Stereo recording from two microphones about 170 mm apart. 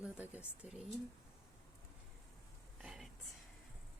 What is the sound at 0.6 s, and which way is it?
Speech, 5° right (ahead or behind).